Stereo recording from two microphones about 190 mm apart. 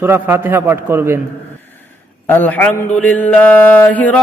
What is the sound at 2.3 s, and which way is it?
Mantra, 10° left (ahead or behind).